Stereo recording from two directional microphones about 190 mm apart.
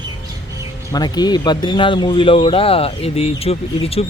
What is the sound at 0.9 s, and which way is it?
Speech, 20° left (ahead or behind).